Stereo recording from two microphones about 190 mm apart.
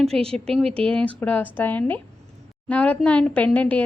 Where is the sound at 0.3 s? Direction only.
Centre (ahead or behind).